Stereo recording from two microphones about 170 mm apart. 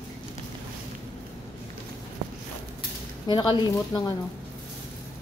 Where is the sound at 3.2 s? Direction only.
25° left (ahead or behind).